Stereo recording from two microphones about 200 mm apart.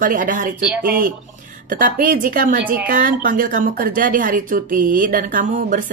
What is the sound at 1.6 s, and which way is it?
Speech, 40° right (ahead or behind).